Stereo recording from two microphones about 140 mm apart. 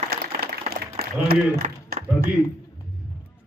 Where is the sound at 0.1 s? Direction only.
90° right.